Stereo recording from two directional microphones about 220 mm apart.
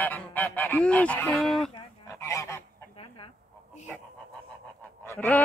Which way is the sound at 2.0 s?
15° left (ahead or behind).